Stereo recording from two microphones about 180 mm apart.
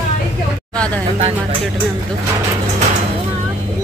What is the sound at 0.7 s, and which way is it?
Vehicle, 5° left (ahead or behind).